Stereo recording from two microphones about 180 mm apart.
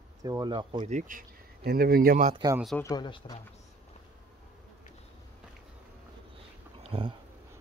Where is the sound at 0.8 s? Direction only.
45° right (ahead or behind).